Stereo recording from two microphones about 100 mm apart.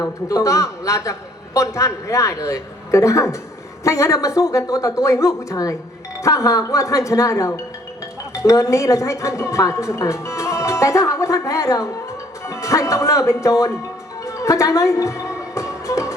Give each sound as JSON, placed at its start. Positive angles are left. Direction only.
{"t": 0.0, "sound": "a woman's voice", "side_deg": 35}
{"t": 14.3, "sound": "music", "side_deg": 30}